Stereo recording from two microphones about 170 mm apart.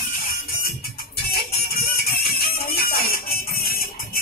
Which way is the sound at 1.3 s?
65° left (ahead or behind).